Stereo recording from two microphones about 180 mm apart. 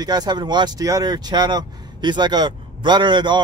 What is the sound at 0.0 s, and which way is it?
Speech, 20° right (ahead or behind).